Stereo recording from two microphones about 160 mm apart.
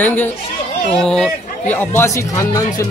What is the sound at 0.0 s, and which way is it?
A man's voice, 10° left (ahead or behind).